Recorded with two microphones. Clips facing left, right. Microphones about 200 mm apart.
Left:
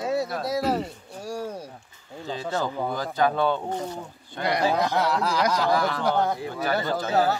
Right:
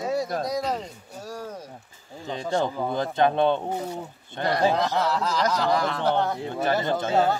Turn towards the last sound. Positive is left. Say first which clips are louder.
# right 1 dB
turn(degrees=-25)  # may be behind; listen again after turning